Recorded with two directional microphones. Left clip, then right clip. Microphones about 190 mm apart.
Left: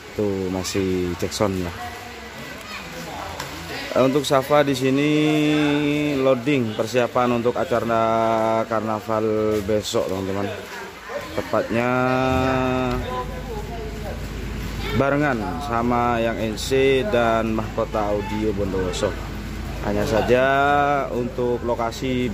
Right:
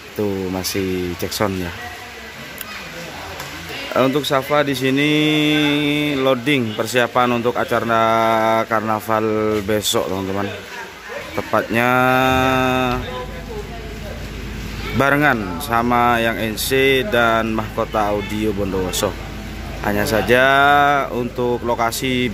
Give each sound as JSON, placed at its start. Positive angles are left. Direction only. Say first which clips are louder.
{"t": 3.9, "sound": "speech", "louder": "right 1 dB", "side_deg": -5}
{"t": 11.5, "sound": "speech", "louder": "right 5 dB", "side_deg": -10}
{"t": 15.0, "sound": "speech", "louder": "right 5 dB", "side_deg": -15}